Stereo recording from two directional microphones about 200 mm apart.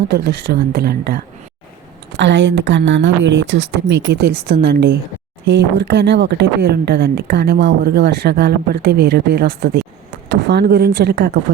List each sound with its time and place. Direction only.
0.1 s speech: 50° right (ahead or behind)
2.1 s speech: 65° right (ahead or behind)